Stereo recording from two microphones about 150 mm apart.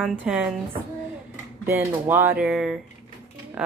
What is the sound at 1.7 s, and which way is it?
Speech, 15° right (ahead or behind).